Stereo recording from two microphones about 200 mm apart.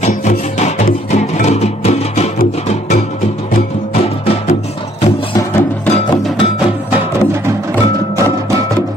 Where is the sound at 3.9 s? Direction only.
30° left (ahead or behind).